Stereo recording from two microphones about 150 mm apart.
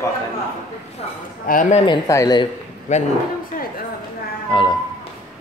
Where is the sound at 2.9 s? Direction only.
55° left (ahead or behind).